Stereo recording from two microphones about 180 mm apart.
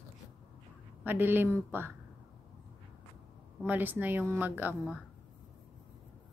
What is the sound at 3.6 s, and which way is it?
A woman's voice, 10° right (ahead or behind).